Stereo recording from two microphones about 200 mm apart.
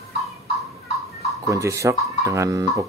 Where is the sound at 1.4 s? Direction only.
15° right (ahead or behind).